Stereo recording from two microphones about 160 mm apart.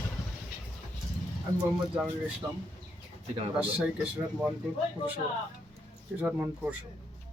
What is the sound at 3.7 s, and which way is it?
Speech, 5° right (ahead or behind).